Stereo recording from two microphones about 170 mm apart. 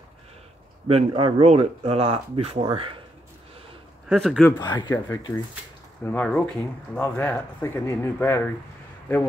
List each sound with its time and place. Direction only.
0.8 s speech: 35° right (ahead or behind)
4.1 s speech: centre (ahead or behind)
4.5 s speech: 25° left (ahead or behind)
6.0 s speech: 5° left (ahead or behind)